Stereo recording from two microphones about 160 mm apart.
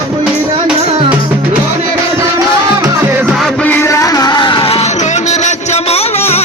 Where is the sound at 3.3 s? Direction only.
5° left (ahead or behind); by 6.4 s 40° left (ahead or behind).